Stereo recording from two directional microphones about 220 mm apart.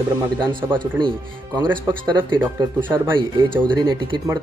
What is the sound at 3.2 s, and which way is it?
Speech, 20° right (ahead or behind).